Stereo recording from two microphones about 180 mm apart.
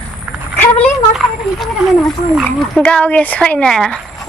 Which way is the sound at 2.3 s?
Centre (ahead or behind).